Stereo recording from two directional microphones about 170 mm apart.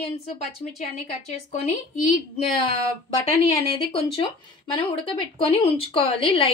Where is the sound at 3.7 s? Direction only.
35° left (ahead or behind).